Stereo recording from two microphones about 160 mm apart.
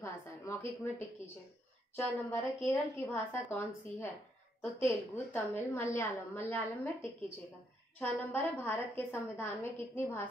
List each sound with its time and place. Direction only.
0.0 s a woman's voice: 15° left (ahead or behind)